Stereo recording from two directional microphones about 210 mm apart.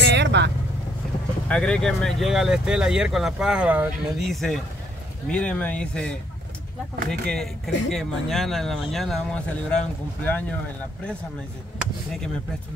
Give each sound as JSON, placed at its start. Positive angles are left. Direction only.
{"t": 0.0, "sound": "vehicle", "side_deg": -55}
{"t": 1.5, "sound": "speech", "side_deg": 5}